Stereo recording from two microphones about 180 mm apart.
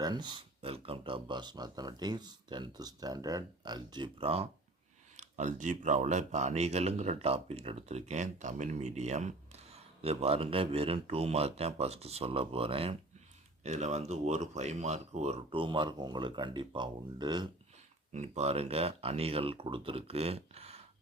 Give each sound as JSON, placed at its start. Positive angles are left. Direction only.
{"t": 0.0, "sound": "speech", "side_deg": -25}
{"t": 18.1, "sound": "speech", "side_deg": -40}